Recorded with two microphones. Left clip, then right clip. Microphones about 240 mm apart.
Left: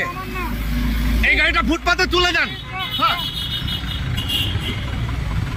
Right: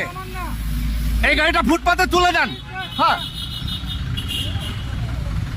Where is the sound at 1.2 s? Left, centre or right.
Centre.